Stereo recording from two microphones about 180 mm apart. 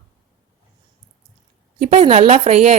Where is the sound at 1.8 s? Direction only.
35° right (ahead or behind).